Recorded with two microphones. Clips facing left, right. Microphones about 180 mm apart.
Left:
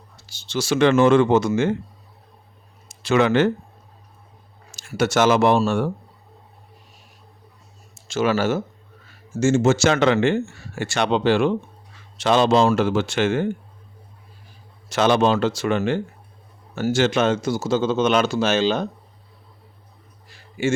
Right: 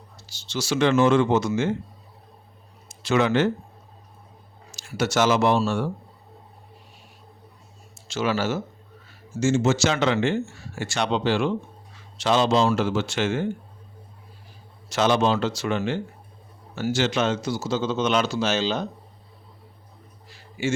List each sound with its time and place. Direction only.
0.3 s speech: 55° left (ahead or behind)
3.0 s speech: 65° left (ahead or behind)
4.7 s speech: 55° left (ahead or behind)
8.0 s speech: 50° left (ahead or behind)
14.8 s speech: 55° left (ahead or behind)